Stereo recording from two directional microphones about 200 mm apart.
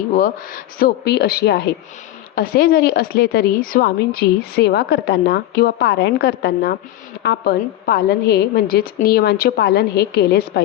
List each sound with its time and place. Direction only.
0.2 s a woman's voice: 45° left (ahead or behind)